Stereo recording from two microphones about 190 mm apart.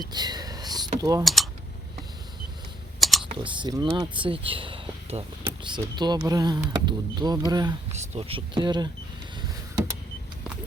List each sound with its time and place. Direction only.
0.1 s a sound: 20° right (ahead or behind)
1.2 s speech: centre (ahead or behind)
3.0 s typing: centre (ahead or behind)
3.4 s speech: 25° right (ahead or behind)